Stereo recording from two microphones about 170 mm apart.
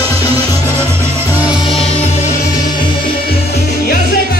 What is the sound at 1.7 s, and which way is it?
Music, 35° left (ahead or behind).